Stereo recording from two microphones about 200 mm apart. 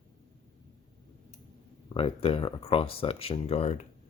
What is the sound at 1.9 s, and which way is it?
Speech, 30° left (ahead or behind).